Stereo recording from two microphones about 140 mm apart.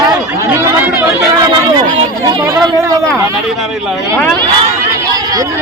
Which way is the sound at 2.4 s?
25° right (ahead or behind).